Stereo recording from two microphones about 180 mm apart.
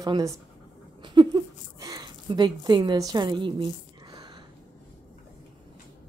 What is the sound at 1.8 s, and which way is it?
A woman's voice, 20° right (ahead or behind).